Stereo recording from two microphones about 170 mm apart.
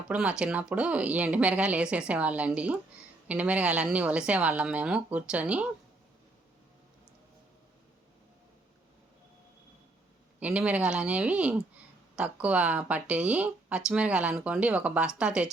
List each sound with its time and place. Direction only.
0.1 s speech: 5° right (ahead or behind)
10.4 s speech: 5° right (ahead or behind)